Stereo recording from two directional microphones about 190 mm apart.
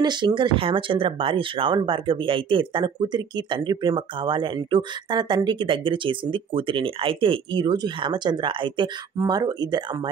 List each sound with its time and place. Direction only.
0.0 s speech: 25° right (ahead or behind)